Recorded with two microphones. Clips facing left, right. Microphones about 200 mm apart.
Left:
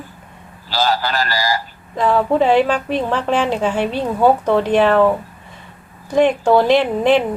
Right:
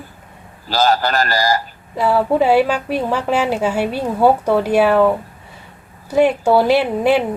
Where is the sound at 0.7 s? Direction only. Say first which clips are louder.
Right 3 dB; 45° right (ahead or behind).